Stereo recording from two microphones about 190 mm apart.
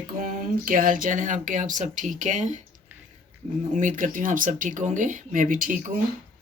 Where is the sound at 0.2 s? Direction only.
50° right (ahead or behind).